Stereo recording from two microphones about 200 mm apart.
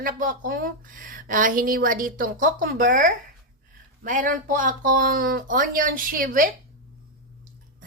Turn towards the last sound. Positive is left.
turn(degrees=-45)  # may be behind; listen again after turning